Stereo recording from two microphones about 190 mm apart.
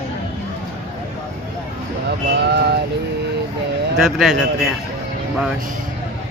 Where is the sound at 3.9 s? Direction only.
Centre (ahead or behind).